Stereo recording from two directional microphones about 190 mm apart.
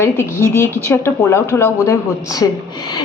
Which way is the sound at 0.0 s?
15° left (ahead or behind).